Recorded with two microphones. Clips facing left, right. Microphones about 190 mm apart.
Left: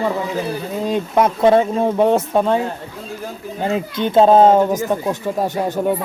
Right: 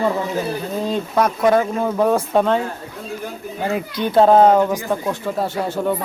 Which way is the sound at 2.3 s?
10° left (ahead or behind).